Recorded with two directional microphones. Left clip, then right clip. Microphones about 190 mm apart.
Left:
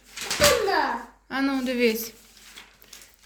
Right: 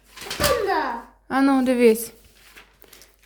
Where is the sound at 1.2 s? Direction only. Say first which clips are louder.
Right 7 dB; 55° right (ahead or behind).